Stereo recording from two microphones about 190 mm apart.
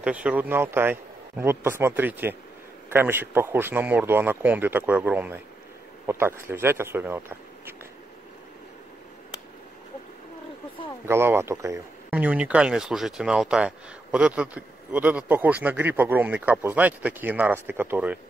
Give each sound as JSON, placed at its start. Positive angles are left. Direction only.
{"t": 0.0, "sound": "speech", "side_deg": -5}
{"t": 11.1, "sound": "speech", "side_deg": -10}